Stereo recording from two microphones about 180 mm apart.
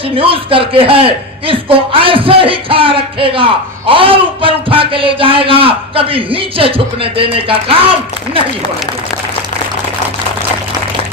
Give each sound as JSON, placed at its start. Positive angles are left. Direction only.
{"t": 0.2, "sound": "a man's voice", "side_deg": -30}